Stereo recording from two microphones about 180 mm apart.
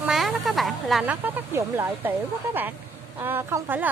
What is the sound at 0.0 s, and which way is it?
Speech, centre (ahead or behind).